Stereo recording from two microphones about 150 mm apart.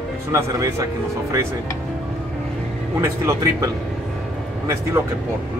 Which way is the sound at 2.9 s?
20° right (ahead or behind).